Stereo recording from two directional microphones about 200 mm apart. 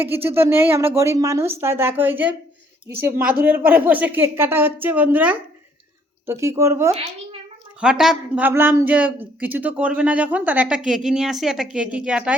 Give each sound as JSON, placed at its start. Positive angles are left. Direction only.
{"t": 0.0, "sound": "speech", "side_deg": -10}
{"t": 3.4, "sound": "speech", "side_deg": -10}
{"t": 6.9, "sound": "a child's voice", "side_deg": -30}
{"t": 7.8, "sound": "a man's voice", "side_deg": -5}